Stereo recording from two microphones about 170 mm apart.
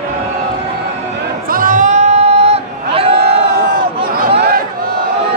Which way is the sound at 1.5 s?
55° right (ahead or behind).